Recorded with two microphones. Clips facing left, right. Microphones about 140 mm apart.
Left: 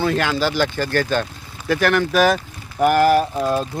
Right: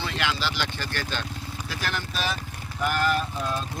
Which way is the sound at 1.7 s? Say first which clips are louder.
Left 16 dB; 65° left (ahead or behind).